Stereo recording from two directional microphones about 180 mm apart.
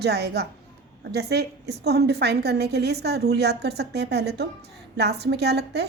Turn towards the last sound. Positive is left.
turn(degrees=-65)  # may be behind; listen again after turning